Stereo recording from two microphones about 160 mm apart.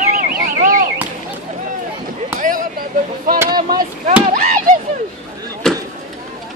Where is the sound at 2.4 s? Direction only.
60° right (ahead or behind).